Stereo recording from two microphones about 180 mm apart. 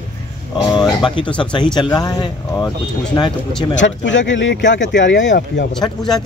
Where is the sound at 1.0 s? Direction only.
25° left (ahead or behind).